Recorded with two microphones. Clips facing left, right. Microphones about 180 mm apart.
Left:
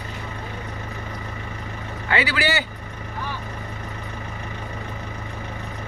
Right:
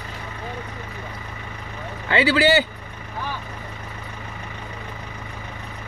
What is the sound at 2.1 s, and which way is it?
Speech, 30° right (ahead or behind).